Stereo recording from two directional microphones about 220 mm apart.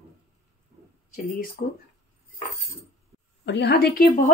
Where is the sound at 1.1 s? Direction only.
40° left (ahead or behind).